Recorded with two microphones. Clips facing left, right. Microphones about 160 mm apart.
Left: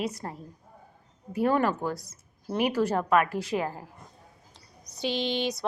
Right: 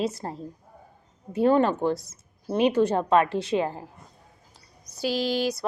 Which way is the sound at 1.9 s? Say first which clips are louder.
Right 6 dB; centre (ahead or behind).